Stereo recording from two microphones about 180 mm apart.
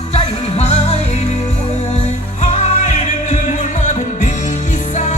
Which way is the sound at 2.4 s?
40° left (ahead or behind).